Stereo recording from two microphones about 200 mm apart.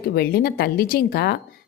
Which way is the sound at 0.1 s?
50° left (ahead or behind).